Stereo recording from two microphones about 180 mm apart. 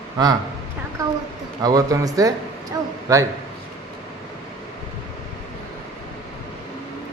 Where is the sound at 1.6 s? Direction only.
20° right (ahead or behind).